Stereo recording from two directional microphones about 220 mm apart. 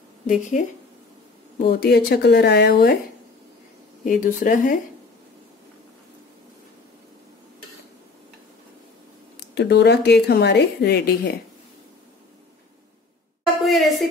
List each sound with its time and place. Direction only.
0.3 s speech: 35° left (ahead or behind)
1.6 s speech: 45° left (ahead or behind)
4.0 s speech: 35° left (ahead or behind)
9.6 s speech: 50° left (ahead or behind)
13.7 s a sound: centre (ahead or behind)